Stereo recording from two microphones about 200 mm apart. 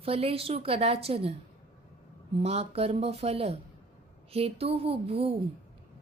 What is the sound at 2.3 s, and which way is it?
A woman's voice, 30° right (ahead or behind).